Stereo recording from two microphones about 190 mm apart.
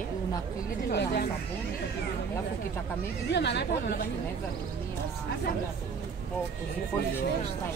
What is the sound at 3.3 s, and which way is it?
Speech, 65° left (ahead or behind).